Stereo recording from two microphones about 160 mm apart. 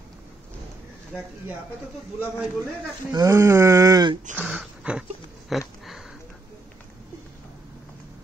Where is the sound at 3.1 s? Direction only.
20° right (ahead or behind).